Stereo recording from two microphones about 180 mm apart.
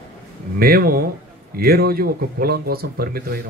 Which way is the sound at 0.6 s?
55° right (ahead or behind).